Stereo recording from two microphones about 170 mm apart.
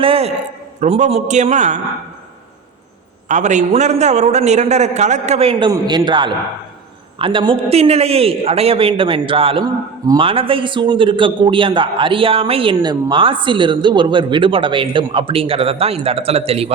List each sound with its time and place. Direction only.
0.0 s a man's voice: 35° right (ahead or behind)
3.2 s a man's voice: 45° right (ahead or behind)